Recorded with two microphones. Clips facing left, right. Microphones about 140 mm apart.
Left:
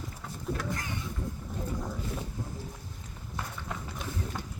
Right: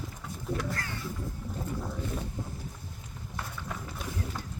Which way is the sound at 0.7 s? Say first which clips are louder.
Left 1 dB; 20° left (ahead or behind).